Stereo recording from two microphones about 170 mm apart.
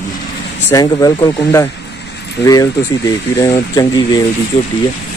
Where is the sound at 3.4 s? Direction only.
20° left (ahead or behind).